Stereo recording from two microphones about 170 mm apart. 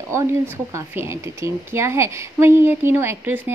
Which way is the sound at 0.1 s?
15° right (ahead or behind).